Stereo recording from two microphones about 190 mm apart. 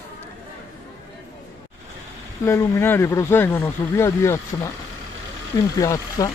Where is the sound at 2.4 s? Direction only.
10° left (ahead or behind).